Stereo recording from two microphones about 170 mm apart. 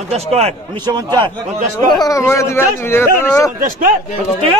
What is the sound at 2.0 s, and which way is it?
Speech, 20° left (ahead or behind).